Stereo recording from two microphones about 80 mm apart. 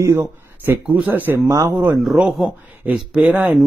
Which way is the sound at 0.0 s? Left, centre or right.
Right.